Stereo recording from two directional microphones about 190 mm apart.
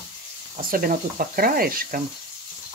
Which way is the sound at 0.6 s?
50° right (ahead or behind).